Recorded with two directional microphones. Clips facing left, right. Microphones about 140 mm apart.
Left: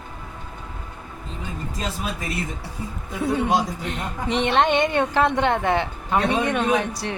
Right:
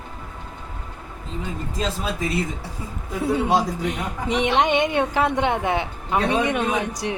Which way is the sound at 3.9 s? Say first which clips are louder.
Right 1 dB; 10° right (ahead or behind).